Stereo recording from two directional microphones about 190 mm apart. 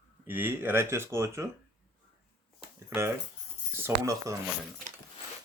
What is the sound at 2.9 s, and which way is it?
Speech, 15° right (ahead or behind).